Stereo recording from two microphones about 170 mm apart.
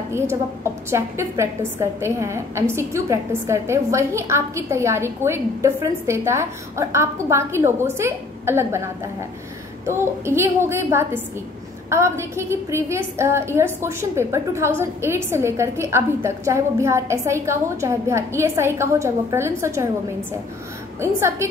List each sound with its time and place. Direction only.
0.8 s a woman's voice: 15° right (ahead or behind)
9.8 s a woman's voice: 15° right (ahead or behind)
21.0 s a woman's voice: 15° right (ahead or behind)